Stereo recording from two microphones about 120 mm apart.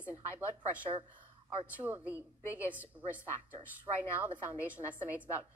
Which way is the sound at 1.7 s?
15° right (ahead or behind).